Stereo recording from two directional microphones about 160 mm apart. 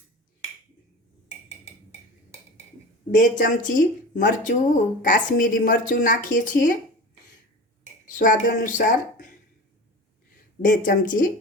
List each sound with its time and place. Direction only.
3.1 s speech: 55° left (ahead or behind)
8.0 s speech: 55° left (ahead or behind)
10.6 s speech: 55° left (ahead or behind)